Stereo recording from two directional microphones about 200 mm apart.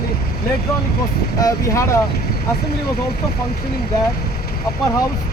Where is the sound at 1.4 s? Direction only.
15° left (ahead or behind).